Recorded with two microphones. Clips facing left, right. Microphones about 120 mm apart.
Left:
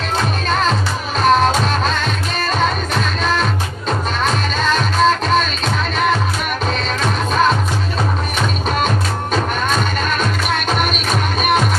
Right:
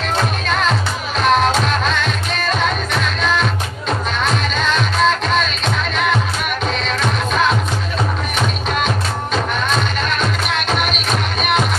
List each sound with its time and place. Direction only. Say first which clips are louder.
0.5 s music: left 1 dB; 40° left (ahead or behind)
8.8 s music: left 1 dB; 45° left (ahead or behind)